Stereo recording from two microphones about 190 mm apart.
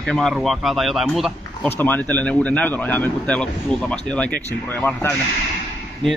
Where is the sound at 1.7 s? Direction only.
10° left (ahead or behind).